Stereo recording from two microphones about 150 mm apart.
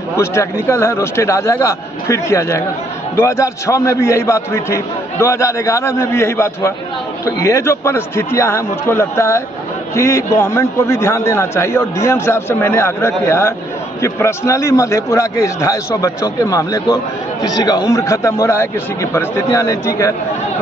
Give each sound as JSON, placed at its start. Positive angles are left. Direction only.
{"t": 0.2, "sound": "a man's voice", "side_deg": 15}